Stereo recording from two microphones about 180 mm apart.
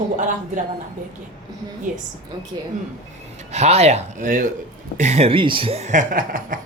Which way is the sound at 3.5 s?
35° right (ahead or behind).